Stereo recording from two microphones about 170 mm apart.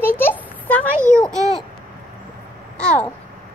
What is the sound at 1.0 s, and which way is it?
Speech, 15° right (ahead or behind).